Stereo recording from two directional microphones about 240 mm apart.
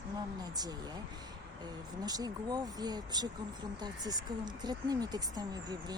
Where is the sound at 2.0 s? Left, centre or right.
Centre.